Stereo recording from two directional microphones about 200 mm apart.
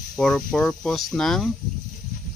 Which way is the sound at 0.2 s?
5° left (ahead or behind).